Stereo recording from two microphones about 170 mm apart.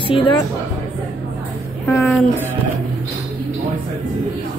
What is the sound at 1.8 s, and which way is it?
Speech, 15° left (ahead or behind).